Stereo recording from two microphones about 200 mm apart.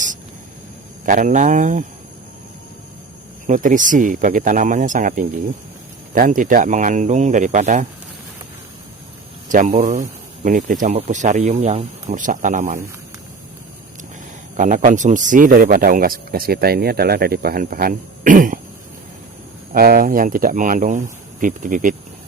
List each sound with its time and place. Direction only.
1.0 s speech: 40° right (ahead or behind)
3.4 s speech: 40° right (ahead or behind)
9.5 s speech: 35° right (ahead or behind)
14.5 s speech: 40° right (ahead or behind)
19.7 s speech: 45° right (ahead or behind)